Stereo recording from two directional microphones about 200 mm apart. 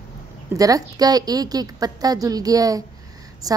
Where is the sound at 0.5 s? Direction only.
15° right (ahead or behind).